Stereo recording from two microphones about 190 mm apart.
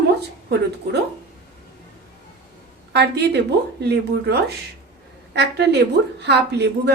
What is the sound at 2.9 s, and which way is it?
A woman's voice, 60° right (ahead or behind).